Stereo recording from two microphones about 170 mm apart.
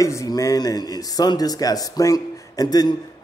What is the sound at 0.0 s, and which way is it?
Speech, 20° left (ahead or behind).